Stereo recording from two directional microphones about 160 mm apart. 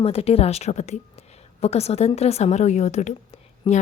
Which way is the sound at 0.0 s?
40° left (ahead or behind).